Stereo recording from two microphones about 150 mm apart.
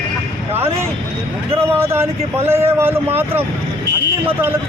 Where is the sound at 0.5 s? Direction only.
15° right (ahead or behind).